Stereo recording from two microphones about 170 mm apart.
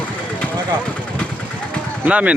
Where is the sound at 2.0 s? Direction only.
10° right (ahead or behind).